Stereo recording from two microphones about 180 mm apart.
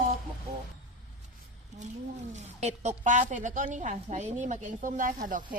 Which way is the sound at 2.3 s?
40° right (ahead or behind).